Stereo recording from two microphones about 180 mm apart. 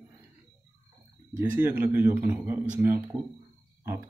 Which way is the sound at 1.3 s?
10° right (ahead or behind).